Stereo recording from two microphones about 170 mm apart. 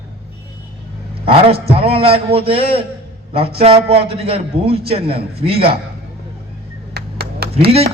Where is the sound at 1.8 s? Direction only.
35° right (ahead or behind).